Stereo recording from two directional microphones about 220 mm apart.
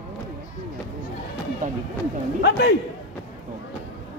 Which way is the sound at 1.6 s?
35° right (ahead or behind).